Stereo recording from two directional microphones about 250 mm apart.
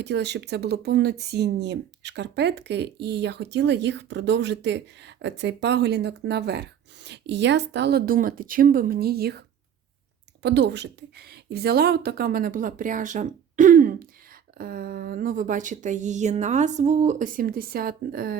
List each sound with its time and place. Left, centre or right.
0.0 s speech: right
10.4 s a woman's voice: right